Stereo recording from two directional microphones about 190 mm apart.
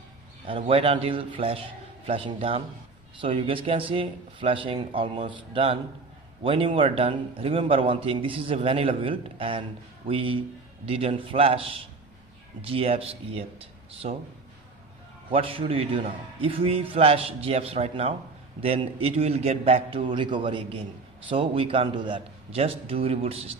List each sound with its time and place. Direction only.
0.4 s a man's voice: 30° right (ahead or behind)
15.3 s a man's voice: 30° right (ahead or behind)